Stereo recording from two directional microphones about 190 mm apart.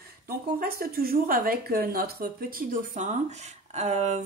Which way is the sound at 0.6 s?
50° right (ahead or behind).